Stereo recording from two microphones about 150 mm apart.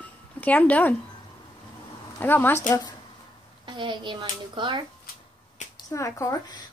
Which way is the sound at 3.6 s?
30° right (ahead or behind).